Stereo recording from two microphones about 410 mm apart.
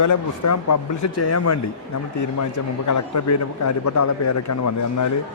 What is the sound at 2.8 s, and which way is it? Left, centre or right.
A man's voice, left.